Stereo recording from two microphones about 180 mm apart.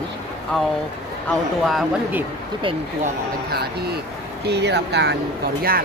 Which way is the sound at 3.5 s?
60° right (ahead or behind).